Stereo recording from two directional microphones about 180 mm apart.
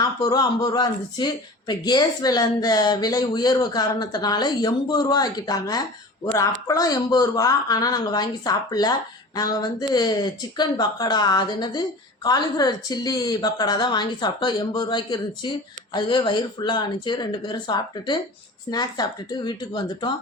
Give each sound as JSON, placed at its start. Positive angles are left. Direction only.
{"t": 0.0, "sound": "speech", "side_deg": 20}